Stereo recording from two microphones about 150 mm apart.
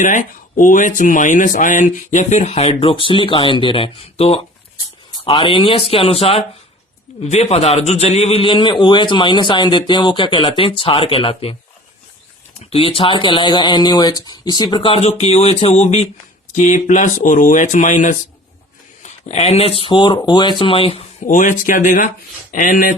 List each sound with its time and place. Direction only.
0.0 s a man's voice: 60° left (ahead or behind); by 11.5 s 40° left (ahead or behind)
12.7 s a man's voice: 40° left (ahead or behind); by 18.2 s 55° left (ahead or behind)
19.0 s a man's voice: 45° left (ahead or behind)
21.2 s speech: 60° left (ahead or behind)